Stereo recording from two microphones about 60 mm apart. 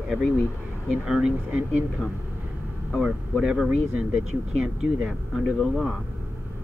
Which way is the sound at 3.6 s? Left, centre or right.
Centre.